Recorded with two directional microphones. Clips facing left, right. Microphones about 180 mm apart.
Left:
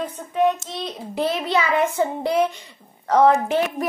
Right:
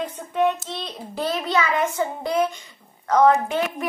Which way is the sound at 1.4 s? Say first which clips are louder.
Left 1 dB; 30° left (ahead or behind).